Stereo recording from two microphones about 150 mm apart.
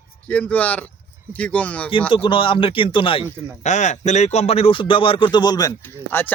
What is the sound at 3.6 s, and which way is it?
Speech, 55° left (ahead or behind).